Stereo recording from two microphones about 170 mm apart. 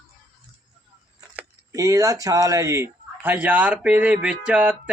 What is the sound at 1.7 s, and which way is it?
A man's voice, 20° right (ahead or behind).